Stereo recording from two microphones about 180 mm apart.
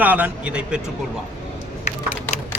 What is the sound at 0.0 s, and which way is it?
Speech, 10° right (ahead or behind).